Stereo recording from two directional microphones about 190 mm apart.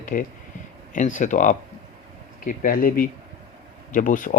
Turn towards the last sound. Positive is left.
turn(degrees=45)  # may be behind; listen again after turning